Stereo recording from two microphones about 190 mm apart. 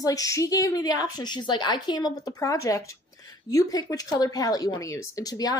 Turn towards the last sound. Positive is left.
turn(degrees=20)  # may be behind; listen again after turning